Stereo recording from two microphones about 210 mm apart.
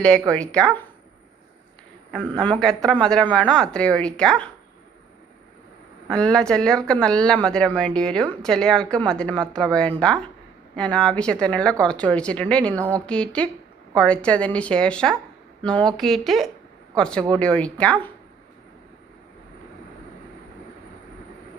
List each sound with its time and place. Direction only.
0.0 s a woman's voice: 5° left (ahead or behind)
2.1 s a woman's voice: 5° left (ahead or behind)
6.1 s a woman's voice: 5° left (ahead or behind)